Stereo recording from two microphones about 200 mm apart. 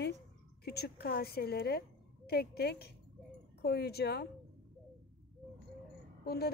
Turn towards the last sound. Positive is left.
turn(degrees=50)  # may be behind; listen again after turning